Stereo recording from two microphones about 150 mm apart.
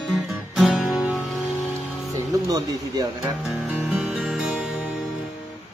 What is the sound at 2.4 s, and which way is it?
Speech, 25° right (ahead or behind).